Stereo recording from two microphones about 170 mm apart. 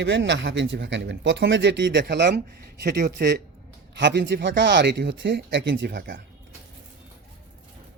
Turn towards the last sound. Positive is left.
turn(degrees=-60)  # may be behind; listen again after turning